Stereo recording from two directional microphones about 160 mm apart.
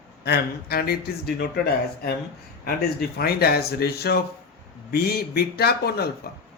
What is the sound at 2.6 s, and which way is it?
Speech, 75° left (ahead or behind).